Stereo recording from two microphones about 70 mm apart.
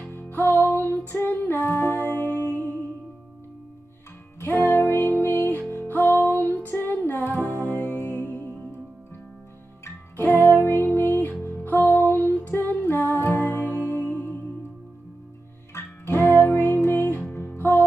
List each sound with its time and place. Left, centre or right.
0.1 s music: left
0.8 s female singing: left
1.9 s music: left
4.4 s music: left
10.1 s music: left
15.7 s music: left
16.3 s music: left